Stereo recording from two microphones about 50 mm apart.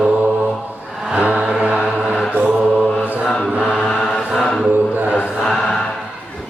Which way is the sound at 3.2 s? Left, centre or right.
Centre.